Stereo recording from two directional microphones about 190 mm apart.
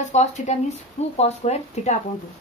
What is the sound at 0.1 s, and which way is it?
Speech, 35° left (ahead or behind).